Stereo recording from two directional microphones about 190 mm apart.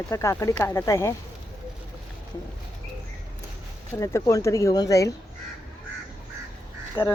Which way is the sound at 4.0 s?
15° left (ahead or behind).